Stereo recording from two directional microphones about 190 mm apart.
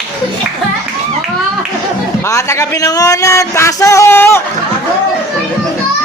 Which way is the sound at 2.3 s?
15° left (ahead or behind).